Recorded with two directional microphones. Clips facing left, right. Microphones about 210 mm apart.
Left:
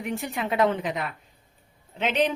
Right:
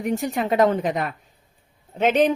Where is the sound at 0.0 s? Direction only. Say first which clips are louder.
Right 6 dB; 40° right (ahead or behind).